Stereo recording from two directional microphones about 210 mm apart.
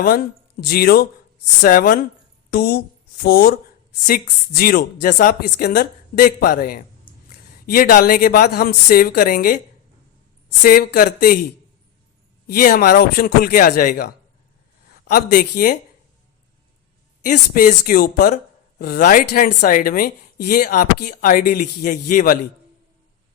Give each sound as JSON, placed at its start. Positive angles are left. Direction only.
{"t": 0.0, "sound": "a woman's voice", "side_deg": 45}
{"t": 10.6, "sound": "a woman's voice", "side_deg": 45}
{"t": 12.5, "sound": "a woman's voice", "side_deg": 45}
{"t": 17.2, "sound": "a woman's voice", "side_deg": 40}